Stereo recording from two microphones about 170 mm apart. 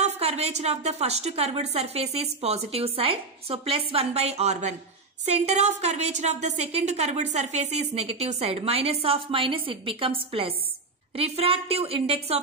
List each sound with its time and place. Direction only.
0.0 s a woman's voice: 35° right (ahead or behind)